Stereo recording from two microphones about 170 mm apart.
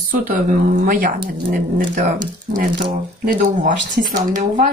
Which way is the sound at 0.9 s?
55° right (ahead or behind).